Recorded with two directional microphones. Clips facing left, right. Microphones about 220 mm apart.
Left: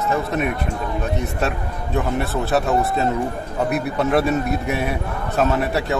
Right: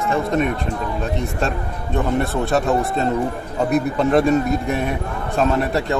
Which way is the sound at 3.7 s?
5° left (ahead or behind).